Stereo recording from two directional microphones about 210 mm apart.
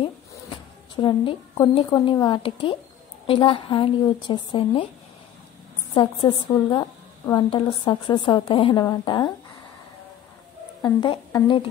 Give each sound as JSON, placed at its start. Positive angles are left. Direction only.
{"t": 0.9, "sound": "a woman's voice", "side_deg": 20}
{"t": 5.9, "sound": "a woman's voice", "side_deg": 20}
{"t": 10.8, "sound": "a woman's voice", "side_deg": 20}